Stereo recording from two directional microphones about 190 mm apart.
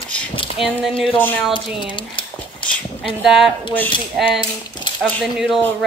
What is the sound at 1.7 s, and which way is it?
Speech, 25° left (ahead or behind).